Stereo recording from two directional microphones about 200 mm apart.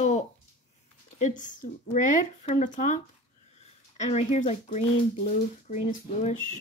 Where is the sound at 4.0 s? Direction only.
35° left (ahead or behind).